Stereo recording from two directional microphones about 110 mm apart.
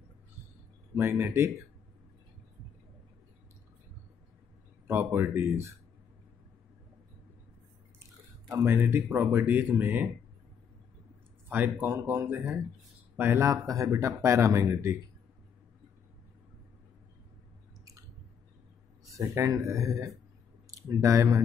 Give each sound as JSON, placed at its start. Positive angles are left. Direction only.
{"t": 0.9, "sound": "speech", "side_deg": -20}
{"t": 4.8, "sound": "speech", "side_deg": -20}
{"t": 8.5, "sound": "speech", "side_deg": -25}
{"t": 11.4, "sound": "speech", "side_deg": -15}
{"t": 19.0, "sound": "speech", "side_deg": -30}